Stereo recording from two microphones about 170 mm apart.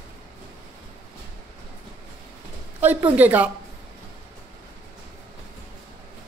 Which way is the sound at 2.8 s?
10° right (ahead or behind).